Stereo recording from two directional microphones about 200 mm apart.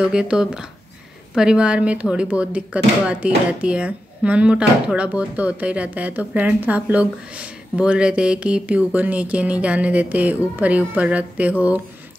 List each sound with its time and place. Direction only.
0.0 s speech: 5° right (ahead or behind)